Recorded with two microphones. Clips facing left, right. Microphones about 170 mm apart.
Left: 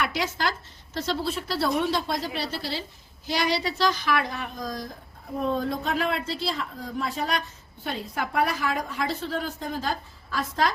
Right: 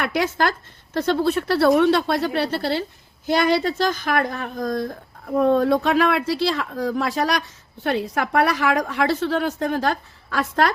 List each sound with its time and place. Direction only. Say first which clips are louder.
0.0 s speech: right 6 dB; 55° right (ahead or behind)